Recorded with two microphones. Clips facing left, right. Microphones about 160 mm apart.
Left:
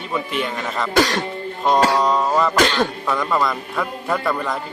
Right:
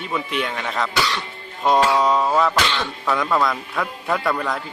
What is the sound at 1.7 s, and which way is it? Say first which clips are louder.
Music: left 1 dB; 40° left (ahead or behind).